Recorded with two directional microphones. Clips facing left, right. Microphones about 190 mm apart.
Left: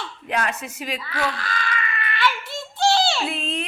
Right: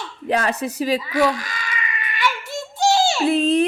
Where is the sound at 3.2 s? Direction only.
40° right (ahead or behind).